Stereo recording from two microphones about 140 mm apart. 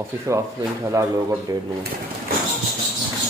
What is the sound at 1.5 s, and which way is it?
Speech, 25° right (ahead or behind).